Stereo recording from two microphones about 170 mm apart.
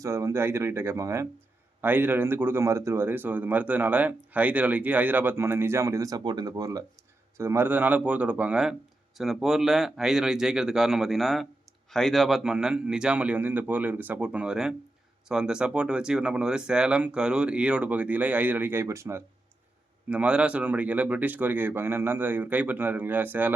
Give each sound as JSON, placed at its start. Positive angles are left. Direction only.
{"t": 0.0, "sound": "a man's voice", "side_deg": -20}